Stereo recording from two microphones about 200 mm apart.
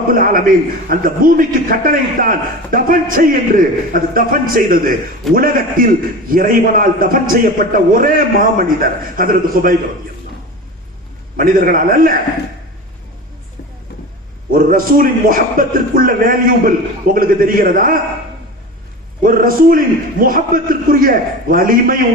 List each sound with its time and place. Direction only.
0.1 s a man's voice: 45° right (ahead or behind)
11.3 s a man's voice: 45° right (ahead or behind)
14.5 s a man's voice: 45° right (ahead or behind)
19.2 s a man's voice: 45° right (ahead or behind)